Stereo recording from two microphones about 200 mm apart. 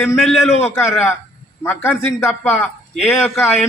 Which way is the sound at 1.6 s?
10° left (ahead or behind).